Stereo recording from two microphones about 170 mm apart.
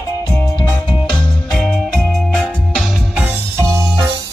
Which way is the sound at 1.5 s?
Centre (ahead or behind).